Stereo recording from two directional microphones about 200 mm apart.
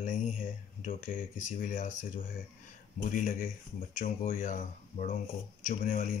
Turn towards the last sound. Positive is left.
turn(degrees=40)  # may be behind; listen again after turning